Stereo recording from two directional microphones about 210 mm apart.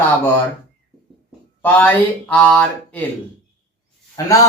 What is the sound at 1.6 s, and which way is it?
Speech, 5° left (ahead or behind).